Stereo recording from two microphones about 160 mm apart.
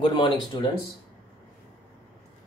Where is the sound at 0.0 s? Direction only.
30° left (ahead or behind).